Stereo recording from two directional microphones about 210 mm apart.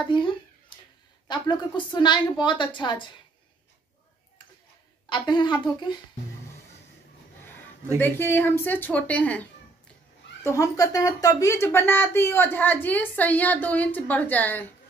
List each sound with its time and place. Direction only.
0.0 s speech: 20° left (ahead or behind)
5.1 s speech: 20° left (ahead or behind)
8.0 s speech: 10° left (ahead or behind)